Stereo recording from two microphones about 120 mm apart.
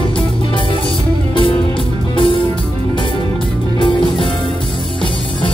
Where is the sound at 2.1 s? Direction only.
45° left (ahead or behind).